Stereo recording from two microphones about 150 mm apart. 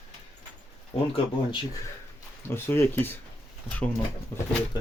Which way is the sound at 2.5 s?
15° left (ahead or behind).